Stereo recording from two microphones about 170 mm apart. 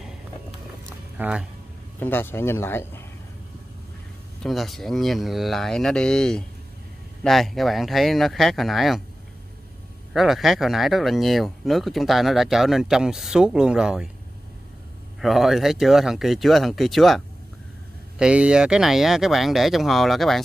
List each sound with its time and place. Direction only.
1.1 s speech: 10° right (ahead or behind)
2.0 s speech: 10° left (ahead or behind)
4.4 s speech: centre (ahead or behind)
10.1 s speech: centre (ahead or behind)
15.1 s speech: centre (ahead or behind)
18.2 s speech: 5° right (ahead or behind)